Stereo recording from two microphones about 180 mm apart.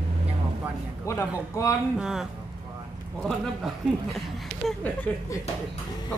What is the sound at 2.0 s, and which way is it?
A woman's voice, 5° right (ahead or behind).